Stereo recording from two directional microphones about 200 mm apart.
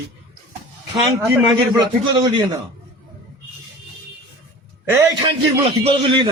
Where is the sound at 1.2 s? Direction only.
15° right (ahead or behind).